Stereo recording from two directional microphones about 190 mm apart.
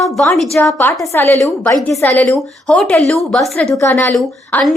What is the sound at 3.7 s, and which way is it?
A woman's voice, 15° left (ahead or behind).